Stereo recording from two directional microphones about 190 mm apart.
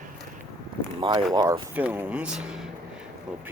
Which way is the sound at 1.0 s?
25° right (ahead or behind).